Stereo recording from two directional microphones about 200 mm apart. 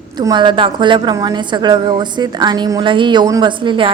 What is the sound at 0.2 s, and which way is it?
A woman's voice, 20° right (ahead or behind).